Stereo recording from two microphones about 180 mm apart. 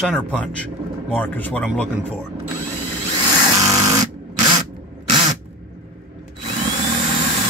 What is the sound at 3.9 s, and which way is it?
Electric toothbrush, 20° right (ahead or behind).